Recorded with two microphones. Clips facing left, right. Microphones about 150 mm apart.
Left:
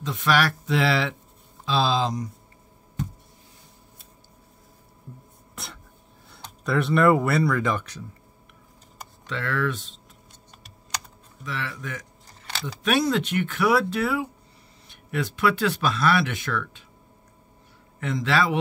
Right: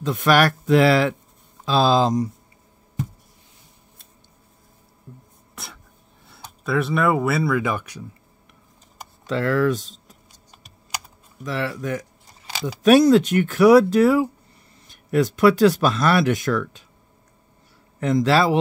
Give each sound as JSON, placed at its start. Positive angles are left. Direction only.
{"t": 0.0, "sound": "speech", "side_deg": -50}
{"t": 5.6, "sound": "speech", "side_deg": 0}
{"t": 9.3, "sound": "speech", "side_deg": -40}
{"t": 11.4, "sound": "speech", "side_deg": -40}
{"t": 18.0, "sound": "speech", "side_deg": -40}